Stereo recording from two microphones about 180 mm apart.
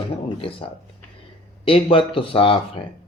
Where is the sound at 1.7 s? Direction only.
30° left (ahead or behind).